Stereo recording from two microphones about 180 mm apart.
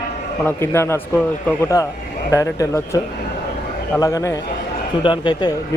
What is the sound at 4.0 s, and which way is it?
Speech, 20° left (ahead or behind).